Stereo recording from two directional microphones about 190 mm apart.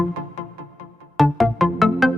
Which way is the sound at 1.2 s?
Centre (ahead or behind).